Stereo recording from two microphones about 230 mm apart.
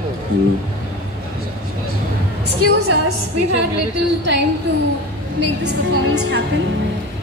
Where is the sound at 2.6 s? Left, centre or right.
Right.